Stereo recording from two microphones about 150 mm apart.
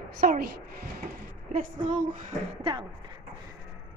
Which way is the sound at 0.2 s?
75° right (ahead or behind).